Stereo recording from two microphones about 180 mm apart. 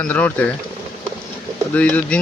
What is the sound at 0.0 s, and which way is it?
Speech, 10° left (ahead or behind).